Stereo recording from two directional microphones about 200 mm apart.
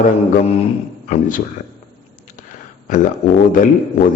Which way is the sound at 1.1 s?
40° left (ahead or behind).